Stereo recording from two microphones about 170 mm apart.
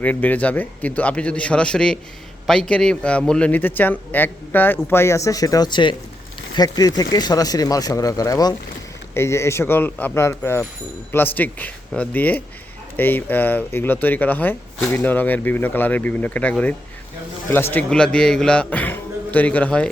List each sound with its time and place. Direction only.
0.0 s speech: 10° left (ahead or behind)